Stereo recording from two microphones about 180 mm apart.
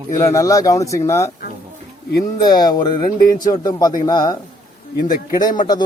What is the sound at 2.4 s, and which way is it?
Speech, 20° left (ahead or behind).